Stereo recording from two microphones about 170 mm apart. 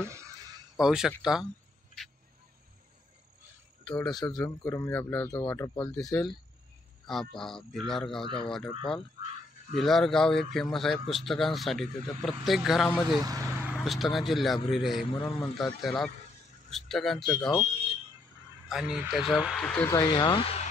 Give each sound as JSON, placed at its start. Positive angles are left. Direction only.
{"t": 0.7, "sound": "speech", "side_deg": -5}
{"t": 3.8, "sound": "speech", "side_deg": 5}
{"t": 4.1, "sound": "speech", "side_deg": 25}
{"t": 7.1, "sound": "speech", "side_deg": 0}
{"t": 13.2, "sound": "speech", "side_deg": -20}
{"t": 13.7, "sound": "speech", "side_deg": 0}
{"t": 18.7, "sound": "speech", "side_deg": -5}
{"t": 19.9, "sound": "speech", "side_deg": 25}